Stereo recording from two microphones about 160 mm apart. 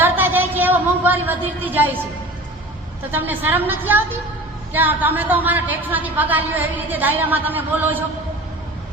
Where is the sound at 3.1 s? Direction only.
10° right (ahead or behind).